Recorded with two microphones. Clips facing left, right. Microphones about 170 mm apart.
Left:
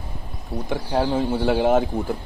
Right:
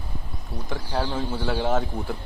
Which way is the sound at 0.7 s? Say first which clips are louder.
Left 6 dB; 15° left (ahead or behind).